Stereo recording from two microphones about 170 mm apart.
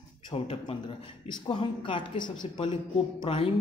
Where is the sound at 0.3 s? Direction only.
35° left (ahead or behind).